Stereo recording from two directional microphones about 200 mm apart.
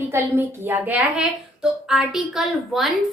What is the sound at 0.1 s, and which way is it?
A woman's voice, 10° right (ahead or behind).